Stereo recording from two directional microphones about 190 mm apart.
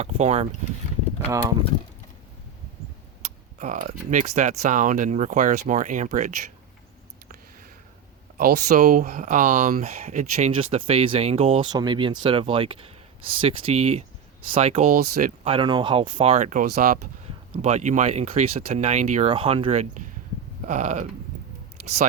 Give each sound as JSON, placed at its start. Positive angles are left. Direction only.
{"t": 0.0, "sound": "speech", "side_deg": -35}
{"t": 3.2, "sound": "speech", "side_deg": -40}
{"t": 8.4, "sound": "speech", "side_deg": -55}
{"t": 8.7, "sound": "speech", "side_deg": -40}
{"t": 10.5, "sound": "speech", "side_deg": -30}
{"t": 14.8, "sound": "speech", "side_deg": -50}
{"t": 15.4, "sound": "speech", "side_deg": -25}
{"t": 17.6, "sound": "speech", "side_deg": -35}